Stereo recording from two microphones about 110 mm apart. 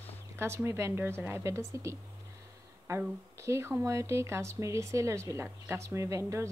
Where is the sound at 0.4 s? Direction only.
25° right (ahead or behind).